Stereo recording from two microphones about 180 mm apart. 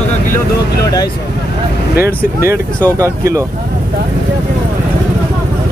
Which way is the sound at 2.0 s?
60° left (ahead or behind).